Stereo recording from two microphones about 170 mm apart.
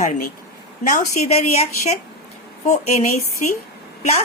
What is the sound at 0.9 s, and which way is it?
A woman's voice, 40° left (ahead or behind).